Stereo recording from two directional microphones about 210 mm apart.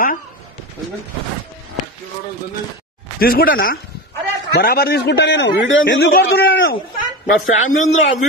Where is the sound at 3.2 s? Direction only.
45° left (ahead or behind).